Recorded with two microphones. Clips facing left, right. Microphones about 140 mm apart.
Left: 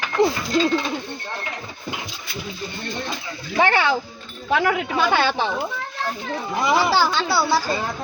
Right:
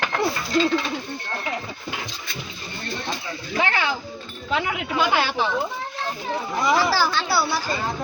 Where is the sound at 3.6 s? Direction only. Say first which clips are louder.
Left 5 dB; 35° left (ahead or behind).